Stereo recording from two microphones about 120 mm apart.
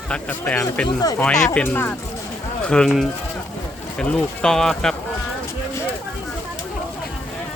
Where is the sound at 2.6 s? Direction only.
5° left (ahead or behind).